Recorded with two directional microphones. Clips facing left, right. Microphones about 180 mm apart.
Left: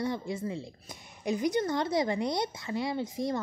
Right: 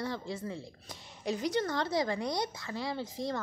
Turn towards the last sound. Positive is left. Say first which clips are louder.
# left 4 dB
turn(degrees=20)  # may be behind; listen again after turning